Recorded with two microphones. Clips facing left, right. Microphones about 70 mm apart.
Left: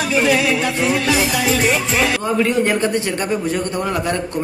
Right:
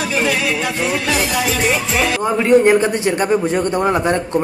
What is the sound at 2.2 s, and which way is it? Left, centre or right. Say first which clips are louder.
A man's voice: right 5 dB; right.